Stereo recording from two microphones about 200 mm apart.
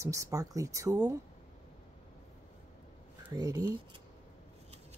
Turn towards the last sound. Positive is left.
turn(degrees=-20)  # may be behind; listen again after turning